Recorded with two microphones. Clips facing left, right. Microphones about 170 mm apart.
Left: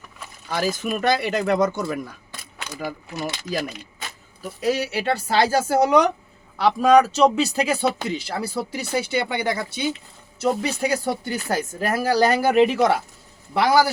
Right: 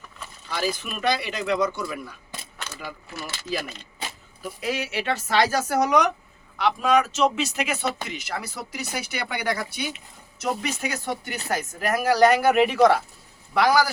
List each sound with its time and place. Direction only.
0.4 s speech: 45° left (ahead or behind)
4.6 s a woman's voice: 40° left (ahead or behind)